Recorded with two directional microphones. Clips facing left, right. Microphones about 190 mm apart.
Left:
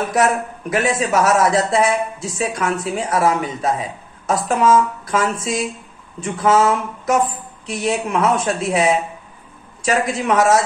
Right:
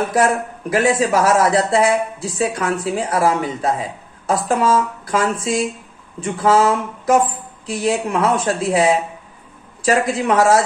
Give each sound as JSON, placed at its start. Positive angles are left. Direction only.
{"t": 0.1, "sound": "speech", "side_deg": -30}
{"t": 10.2, "sound": "speech", "side_deg": -30}